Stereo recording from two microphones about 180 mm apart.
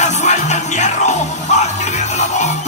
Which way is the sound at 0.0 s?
40° left (ahead or behind).